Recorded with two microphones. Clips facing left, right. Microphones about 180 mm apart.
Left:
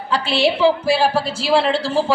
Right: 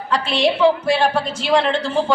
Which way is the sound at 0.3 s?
30° left (ahead or behind).